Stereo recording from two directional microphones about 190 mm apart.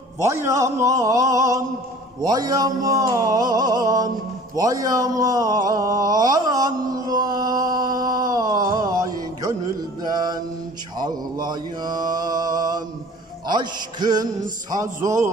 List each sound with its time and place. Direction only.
0.2 s a man's voice: 15° right (ahead or behind)
2.2 s music: 20° right (ahead or behind)
4.6 s a sound: 20° right (ahead or behind)
11.0 s mantra: 20° right (ahead or behind)
13.5 s music: 20° right (ahead or behind)
14.7 s a man's voice: 15° right (ahead or behind)